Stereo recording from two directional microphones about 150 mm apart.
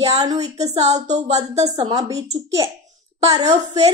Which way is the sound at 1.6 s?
40° right (ahead or behind).